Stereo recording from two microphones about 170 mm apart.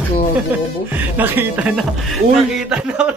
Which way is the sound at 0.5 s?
10° right (ahead or behind).